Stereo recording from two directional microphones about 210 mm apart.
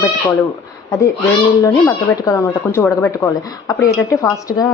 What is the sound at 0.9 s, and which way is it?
A woman's voice, 15° left (ahead or behind).